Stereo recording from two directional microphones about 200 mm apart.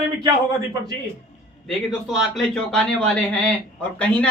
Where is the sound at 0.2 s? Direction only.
20° right (ahead or behind).